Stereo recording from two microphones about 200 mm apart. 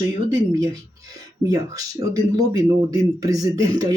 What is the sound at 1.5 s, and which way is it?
Speech, 15° right (ahead or behind).